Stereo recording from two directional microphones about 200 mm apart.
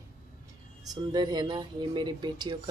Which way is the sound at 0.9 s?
20° right (ahead or behind).